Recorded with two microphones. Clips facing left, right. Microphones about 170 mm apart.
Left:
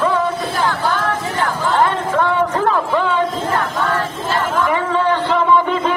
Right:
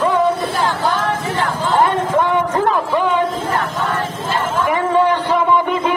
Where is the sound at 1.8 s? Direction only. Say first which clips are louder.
Right 2 dB; 15° right (ahead or behind).